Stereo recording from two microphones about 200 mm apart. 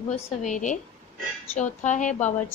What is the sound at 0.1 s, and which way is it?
A woman's voice, 40° left (ahead or behind).